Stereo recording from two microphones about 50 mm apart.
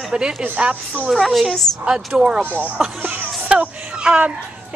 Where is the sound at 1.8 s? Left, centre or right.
Centre.